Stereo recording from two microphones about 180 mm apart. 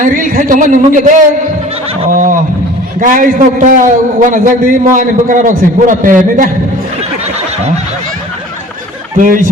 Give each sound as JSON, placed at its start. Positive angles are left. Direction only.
{"t": 0.0, "sound": "a man's voice", "side_deg": -50}
{"t": 9.2, "sound": "a man's voice", "side_deg": -50}